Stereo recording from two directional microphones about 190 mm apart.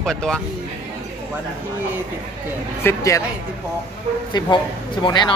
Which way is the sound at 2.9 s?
15° left (ahead or behind).